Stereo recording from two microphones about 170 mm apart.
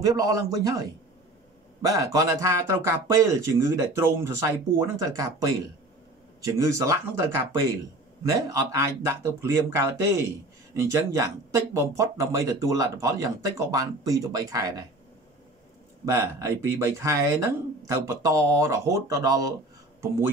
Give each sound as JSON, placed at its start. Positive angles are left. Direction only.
{"t": 0.0, "sound": "speech", "side_deg": -20}
{"t": 16.1, "sound": "speech", "side_deg": -15}